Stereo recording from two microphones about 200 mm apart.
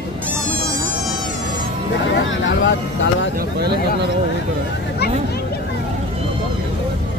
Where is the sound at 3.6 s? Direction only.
55° right (ahead or behind).